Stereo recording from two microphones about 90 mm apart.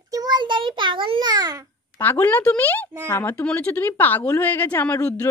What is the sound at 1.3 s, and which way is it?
Speech, 45° right (ahead or behind).